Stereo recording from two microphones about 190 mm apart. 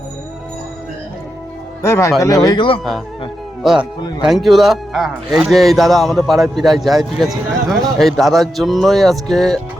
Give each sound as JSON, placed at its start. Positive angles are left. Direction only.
{"t": 1.8, "sound": "speech", "side_deg": 15}
{"t": 3.6, "sound": "speech", "side_deg": -5}